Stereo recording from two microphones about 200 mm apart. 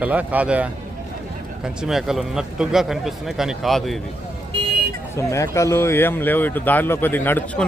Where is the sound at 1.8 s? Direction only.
Centre (ahead or behind).